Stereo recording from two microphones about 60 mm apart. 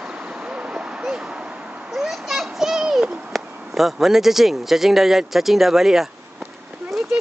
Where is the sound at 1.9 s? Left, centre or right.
Centre.